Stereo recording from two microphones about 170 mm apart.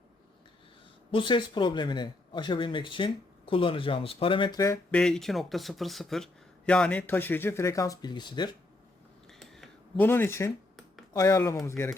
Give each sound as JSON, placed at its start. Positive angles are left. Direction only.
{"t": 1.1, "sound": "speech", "side_deg": 30}
{"t": 4.9, "sound": "speech", "side_deg": 5}
{"t": 9.4, "sound": "a sound", "side_deg": 0}
{"t": 10.1, "sound": "speech", "side_deg": 15}